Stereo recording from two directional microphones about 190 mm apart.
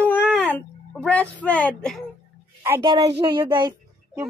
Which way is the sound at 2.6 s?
15° right (ahead or behind).